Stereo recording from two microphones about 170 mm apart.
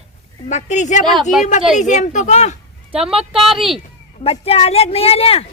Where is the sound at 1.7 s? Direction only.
45° left (ahead or behind).